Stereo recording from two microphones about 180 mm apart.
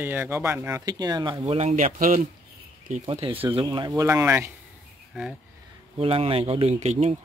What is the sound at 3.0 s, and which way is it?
Speech, 30° right (ahead or behind).